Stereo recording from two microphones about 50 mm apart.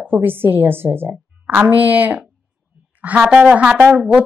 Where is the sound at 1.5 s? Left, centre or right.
Right.